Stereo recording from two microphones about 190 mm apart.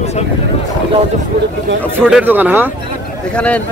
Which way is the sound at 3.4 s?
5° left (ahead or behind).